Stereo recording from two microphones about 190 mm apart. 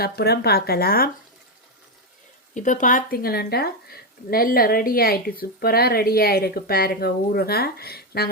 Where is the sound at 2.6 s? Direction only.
40° left (ahead or behind).